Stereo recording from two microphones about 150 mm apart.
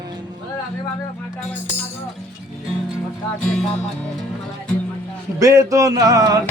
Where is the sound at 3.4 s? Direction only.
5° left (ahead or behind).